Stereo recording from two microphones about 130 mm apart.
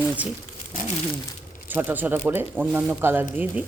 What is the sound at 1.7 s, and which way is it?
Speech, 15° right (ahead or behind).